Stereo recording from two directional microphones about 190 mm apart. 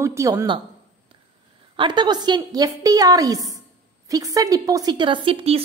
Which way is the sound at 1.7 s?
25° right (ahead or behind).